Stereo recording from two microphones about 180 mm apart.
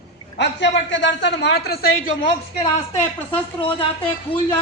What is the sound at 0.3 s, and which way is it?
A man's voice, 85° left.